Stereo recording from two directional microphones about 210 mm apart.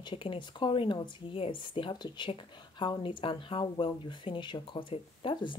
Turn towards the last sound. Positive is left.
turn(degrees=25)  # may be behind; listen again after turning